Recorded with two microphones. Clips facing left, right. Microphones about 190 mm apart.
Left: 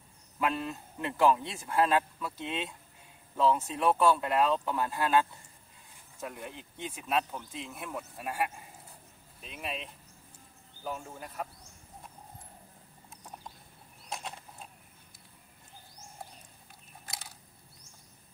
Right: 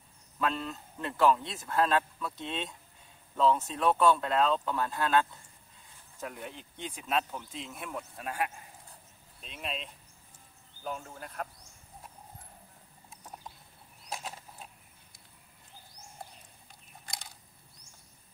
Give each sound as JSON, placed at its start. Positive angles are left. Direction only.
{"t": 0.4, "sound": "speech", "side_deg": 15}
{"t": 9.5, "sound": "speech", "side_deg": 10}
{"t": 10.8, "sound": "speech", "side_deg": 5}
{"t": 14.0, "sound": "mechanisms", "side_deg": 0}
{"t": 17.0, "sound": "a sound", "side_deg": 5}